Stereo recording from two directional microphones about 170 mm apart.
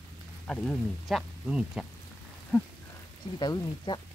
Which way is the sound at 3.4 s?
25° left (ahead or behind).